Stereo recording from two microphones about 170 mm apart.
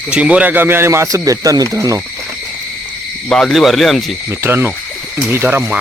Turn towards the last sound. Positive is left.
turn(degrees=-10)  # may be behind; listen again after turning